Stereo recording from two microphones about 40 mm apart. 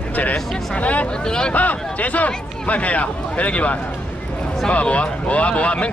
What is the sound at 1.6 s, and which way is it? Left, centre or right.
Speech, left.